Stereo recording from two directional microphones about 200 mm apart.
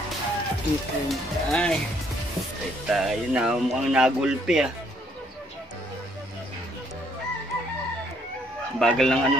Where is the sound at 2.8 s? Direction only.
Centre (ahead or behind).